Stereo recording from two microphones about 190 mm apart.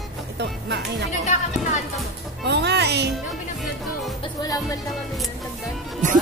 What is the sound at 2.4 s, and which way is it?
Speech, 65° right (ahead or behind).